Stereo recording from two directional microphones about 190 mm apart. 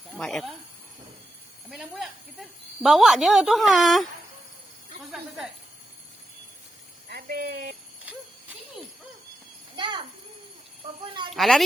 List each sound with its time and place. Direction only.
0.1 s speech: centre (ahead or behind)
1.7 s speech: centre (ahead or behind)
7.1 s a sound: 55° right (ahead or behind)
8.0 s jingle bell: 10° right (ahead or behind)
9.7 s a sound: 25° right (ahead or behind)
11.0 s speech: 25° right (ahead or behind)
11.3 s speech: centre (ahead or behind)